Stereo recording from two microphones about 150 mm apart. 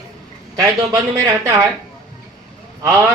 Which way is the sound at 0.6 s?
25° right (ahead or behind).